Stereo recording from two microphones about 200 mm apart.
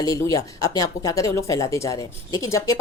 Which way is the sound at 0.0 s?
15° left (ahead or behind).